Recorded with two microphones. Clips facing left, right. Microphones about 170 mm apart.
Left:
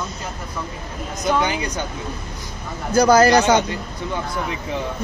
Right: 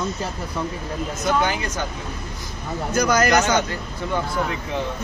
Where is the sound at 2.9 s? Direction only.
30° left (ahead or behind).